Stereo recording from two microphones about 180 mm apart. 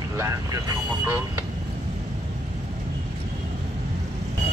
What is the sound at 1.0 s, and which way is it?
Speech, 15° right (ahead or behind).